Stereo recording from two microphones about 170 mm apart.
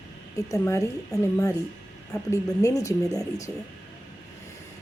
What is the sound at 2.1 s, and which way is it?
Speech, 20° left (ahead or behind).